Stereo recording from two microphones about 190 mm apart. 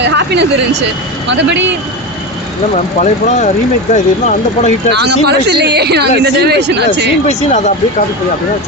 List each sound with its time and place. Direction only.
0.0 s a man's voice: 65° right (ahead or behind)
3.0 s speech: 40° left (ahead or behind)
4.9 s speech: 60° right (ahead or behind)
7.3 s speech: 40° left (ahead or behind)